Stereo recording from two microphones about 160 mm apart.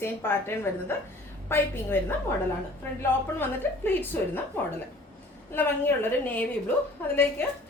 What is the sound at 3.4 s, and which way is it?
A woman's voice, 10° left (ahead or behind).